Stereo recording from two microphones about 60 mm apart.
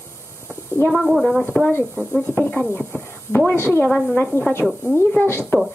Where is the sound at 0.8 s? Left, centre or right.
Centre.